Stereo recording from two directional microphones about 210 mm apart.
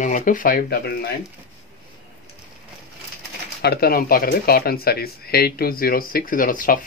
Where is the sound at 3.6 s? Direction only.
50° left (ahead or behind).